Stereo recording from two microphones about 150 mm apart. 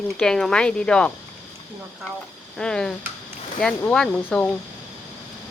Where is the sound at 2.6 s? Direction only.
5° left (ahead or behind).